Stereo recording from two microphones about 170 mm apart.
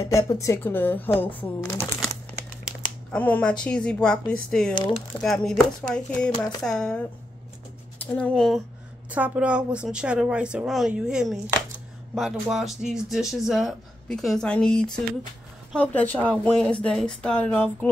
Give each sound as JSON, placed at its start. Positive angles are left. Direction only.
{"t": 0.0, "sound": "a woman's voice", "side_deg": 20}
{"t": 6.3, "sound": "speech", "side_deg": 20}
{"t": 6.6, "sound": "speech", "side_deg": 5}
{"t": 9.1, "sound": "a woman's voice", "side_deg": -10}